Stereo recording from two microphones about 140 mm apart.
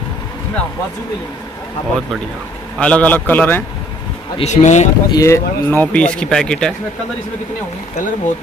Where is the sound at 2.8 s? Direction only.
10° left (ahead or behind).